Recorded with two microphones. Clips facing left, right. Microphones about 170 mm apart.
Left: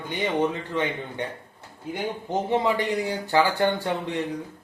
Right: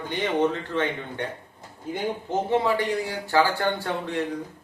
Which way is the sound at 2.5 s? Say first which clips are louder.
Even; 15° left (ahead or behind).